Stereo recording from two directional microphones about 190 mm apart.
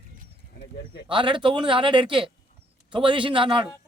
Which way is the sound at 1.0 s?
25° right (ahead or behind).